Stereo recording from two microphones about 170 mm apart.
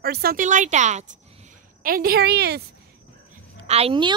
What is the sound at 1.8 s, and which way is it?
Speech, 55° right (ahead or behind).